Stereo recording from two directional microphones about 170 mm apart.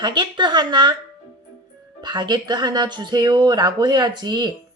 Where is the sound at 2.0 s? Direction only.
25° right (ahead or behind).